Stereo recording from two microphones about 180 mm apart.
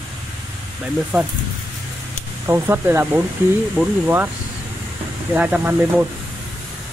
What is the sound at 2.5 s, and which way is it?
Speech, 10° right (ahead or behind).